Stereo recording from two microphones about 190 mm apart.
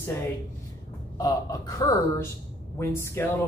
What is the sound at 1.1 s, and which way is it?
A man's voice, 20° left (ahead or behind).